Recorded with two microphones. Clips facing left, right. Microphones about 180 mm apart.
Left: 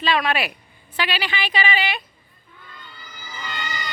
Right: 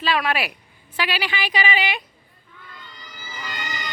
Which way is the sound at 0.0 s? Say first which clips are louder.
Left 1 dB; 5° right (ahead or behind).